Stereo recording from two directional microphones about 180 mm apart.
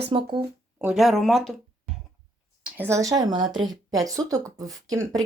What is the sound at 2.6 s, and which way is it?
Speech, 10° right (ahead or behind).